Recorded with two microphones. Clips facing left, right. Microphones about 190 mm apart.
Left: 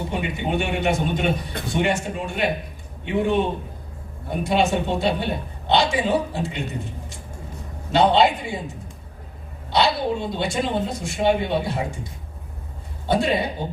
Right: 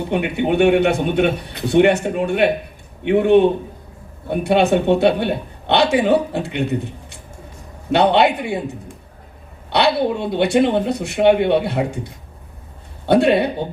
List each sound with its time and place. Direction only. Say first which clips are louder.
0.1 s speech: right 9 dB; 65° right (ahead or behind)
13.1 s speech: right 7 dB; 65° right (ahead or behind)